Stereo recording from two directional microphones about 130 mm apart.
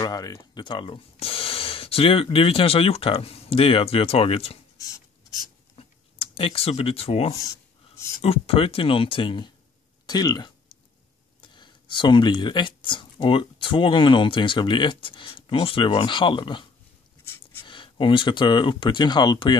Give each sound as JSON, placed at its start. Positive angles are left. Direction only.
{"t": 0.0, "sound": "speech", "side_deg": 30}
{"t": 5.8, "sound": "computer keyboard", "side_deg": 45}
{"t": 8.2, "sound": "speech", "side_deg": 50}
{"t": 10.0, "sound": "a sound", "side_deg": 30}
{"t": 11.4, "sound": "speech", "side_deg": 35}
{"t": 17.6, "sound": "speech", "side_deg": 40}